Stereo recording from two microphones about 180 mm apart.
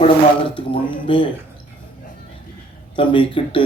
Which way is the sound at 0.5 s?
30° left (ahead or behind).